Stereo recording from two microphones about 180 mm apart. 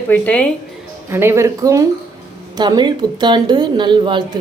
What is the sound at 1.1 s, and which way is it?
A woman's voice, 15° right (ahead or behind).